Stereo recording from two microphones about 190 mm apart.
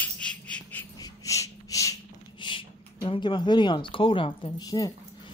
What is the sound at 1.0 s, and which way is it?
Snort, 15° left (ahead or behind).